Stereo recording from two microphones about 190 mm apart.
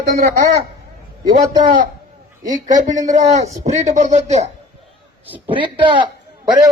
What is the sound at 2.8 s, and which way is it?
Speech, 40° right (ahead or behind).